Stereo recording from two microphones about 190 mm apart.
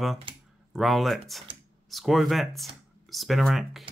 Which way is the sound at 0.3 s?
30° right (ahead or behind).